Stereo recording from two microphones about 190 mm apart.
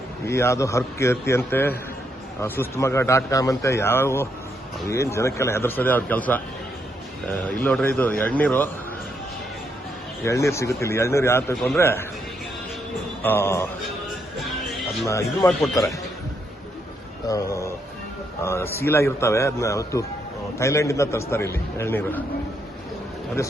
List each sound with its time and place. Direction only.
0.3 s a man's voice: 15° left (ahead or behind)
10.2 s a man's voice: 15° left (ahead or behind)
11.5 s speech: centre (ahead or behind)
11.8 s a man's voice: 10° left (ahead or behind)
13.2 s a man's voice: 10° left (ahead or behind)
14.3 s music: centre (ahead or behind)
15.4 s speech: centre (ahead or behind)
17.2 s a sound: 15° left (ahead or behind)
18.4 s a man's voice: 15° left (ahead or behind)